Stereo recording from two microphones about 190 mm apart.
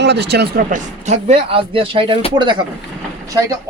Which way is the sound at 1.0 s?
35° right (ahead or behind).